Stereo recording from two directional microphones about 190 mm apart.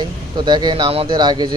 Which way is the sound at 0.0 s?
25° right (ahead or behind).